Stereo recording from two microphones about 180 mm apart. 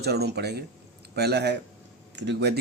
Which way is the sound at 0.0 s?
65° right (ahead or behind).